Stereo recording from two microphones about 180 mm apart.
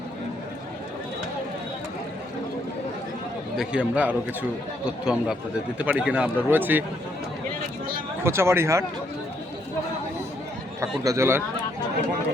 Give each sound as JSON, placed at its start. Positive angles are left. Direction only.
{"t": 3.6, "sound": "a man's voice", "side_deg": -5}
{"t": 8.2, "sound": "a man's voice", "side_deg": -15}
{"t": 11.0, "sound": "a man's voice", "side_deg": -15}